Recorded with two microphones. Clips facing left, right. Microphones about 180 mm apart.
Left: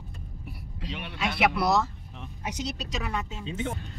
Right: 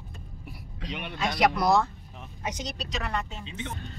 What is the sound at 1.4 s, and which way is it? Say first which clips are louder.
A woman's voice: right 2 dB; 5° left (ahead or behind).